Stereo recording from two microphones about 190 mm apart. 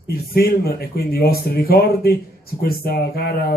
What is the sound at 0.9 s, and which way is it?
Speech, 55° left (ahead or behind).